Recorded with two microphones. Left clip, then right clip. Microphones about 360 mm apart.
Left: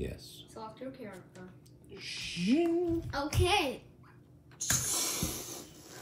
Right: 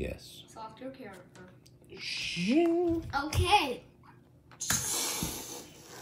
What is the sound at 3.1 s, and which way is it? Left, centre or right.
Speech, centre.